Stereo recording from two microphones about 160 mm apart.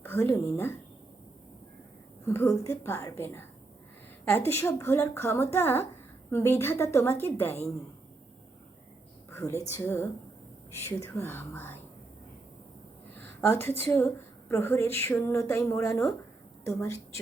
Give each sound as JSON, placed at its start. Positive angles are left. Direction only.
{"t": 0.0, "sound": "a woman's voice", "side_deg": 15}
{"t": 2.2, "sound": "a woman's voice", "side_deg": 15}
{"t": 9.3, "sound": "a sound", "side_deg": 15}
{"t": 9.7, "sound": "a woman's voice", "side_deg": 15}
{"t": 13.1, "sound": "a woman's voice", "side_deg": 15}